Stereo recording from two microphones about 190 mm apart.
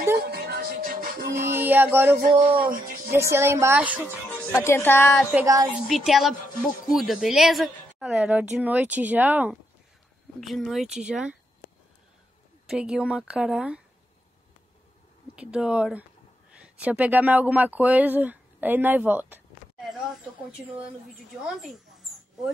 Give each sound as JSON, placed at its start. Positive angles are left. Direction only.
{"t": 0.2, "sound": "music", "side_deg": -55}
{"t": 1.4, "sound": "a sound", "side_deg": -10}
{"t": 2.2, "sound": "speech", "side_deg": -45}
{"t": 3.1, "sound": "a woman's voice", "side_deg": -15}
{"t": 4.3, "sound": "speech", "side_deg": 10}
{"t": 5.3, "sound": "a woman's voice", "side_deg": -15}
{"t": 5.8, "sound": "speech", "side_deg": 0}
{"t": 12.6, "sound": "speech", "side_deg": -5}
{"t": 15.3, "sound": "speech", "side_deg": -5}
{"t": 21.5, "sound": "speech", "side_deg": 0}